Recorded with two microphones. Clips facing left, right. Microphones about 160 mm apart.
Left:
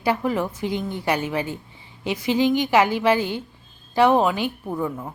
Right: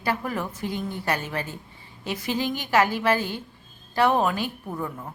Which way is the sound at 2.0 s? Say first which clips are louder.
Left 7 dB; 15° left (ahead or behind).